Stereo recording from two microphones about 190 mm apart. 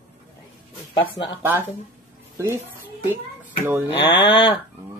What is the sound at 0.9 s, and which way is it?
Speech, 25° left (ahead or behind).